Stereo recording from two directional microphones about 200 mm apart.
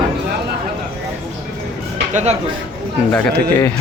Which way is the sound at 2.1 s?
35° right (ahead or behind).